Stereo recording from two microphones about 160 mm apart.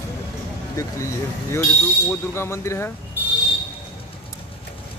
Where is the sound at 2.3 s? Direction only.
15° left (ahead or behind).